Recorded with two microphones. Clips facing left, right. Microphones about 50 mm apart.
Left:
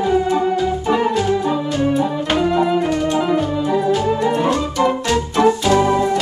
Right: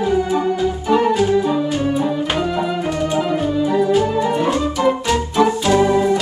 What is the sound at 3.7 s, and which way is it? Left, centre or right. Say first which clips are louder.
Music: right 1 dB; centre.